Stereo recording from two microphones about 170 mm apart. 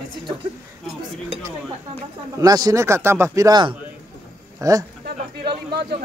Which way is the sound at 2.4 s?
20° right (ahead or behind).